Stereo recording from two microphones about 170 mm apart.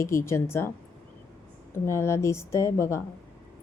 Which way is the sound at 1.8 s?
15° left (ahead or behind).